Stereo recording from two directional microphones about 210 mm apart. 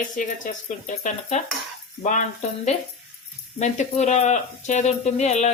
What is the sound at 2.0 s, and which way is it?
Speech, 35° left (ahead or behind).